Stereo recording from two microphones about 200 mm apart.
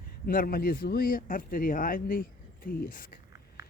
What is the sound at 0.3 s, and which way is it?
Speech, 45° left (ahead or behind).